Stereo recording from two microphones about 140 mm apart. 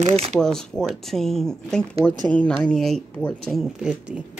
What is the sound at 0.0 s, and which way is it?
Speech, 55° right (ahead or behind).